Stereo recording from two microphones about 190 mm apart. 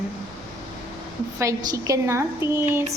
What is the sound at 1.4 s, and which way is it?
A woman's voice, 20° right (ahead or behind).